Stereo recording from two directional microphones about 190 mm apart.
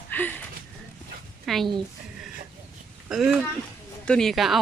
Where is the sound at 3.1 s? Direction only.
5° right (ahead or behind).